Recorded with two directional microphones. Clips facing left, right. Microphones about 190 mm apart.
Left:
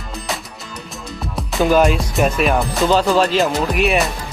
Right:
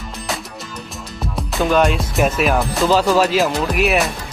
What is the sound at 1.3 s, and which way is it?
Music, centre (ahead or behind).